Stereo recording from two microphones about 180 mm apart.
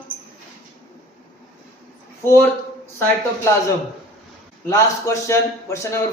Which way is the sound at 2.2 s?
15° left (ahead or behind).